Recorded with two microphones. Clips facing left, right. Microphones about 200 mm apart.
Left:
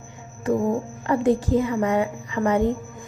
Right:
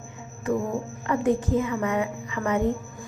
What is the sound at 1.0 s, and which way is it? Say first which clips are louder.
A woman's voice: left 3 dB; 35° left (ahead or behind).